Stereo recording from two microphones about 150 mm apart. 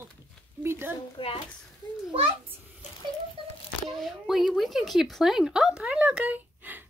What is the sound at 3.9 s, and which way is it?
Speech, centre (ahead or behind).